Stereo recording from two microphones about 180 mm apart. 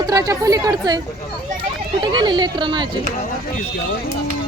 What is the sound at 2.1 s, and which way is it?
Speech, 25° right (ahead or behind).